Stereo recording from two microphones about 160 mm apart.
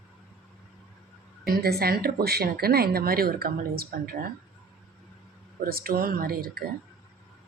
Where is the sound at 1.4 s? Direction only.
75° right (ahead or behind).